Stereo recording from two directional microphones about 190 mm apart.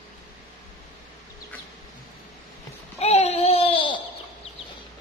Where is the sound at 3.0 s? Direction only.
35° left (ahead or behind).